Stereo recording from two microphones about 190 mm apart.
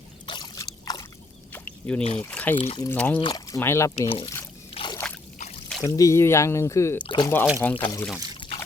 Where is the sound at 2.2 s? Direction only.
10° left (ahead or behind).